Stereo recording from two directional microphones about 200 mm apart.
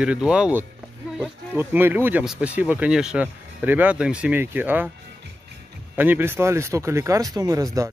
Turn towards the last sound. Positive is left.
turn(degrees=-20)  # may be behind; listen again after turning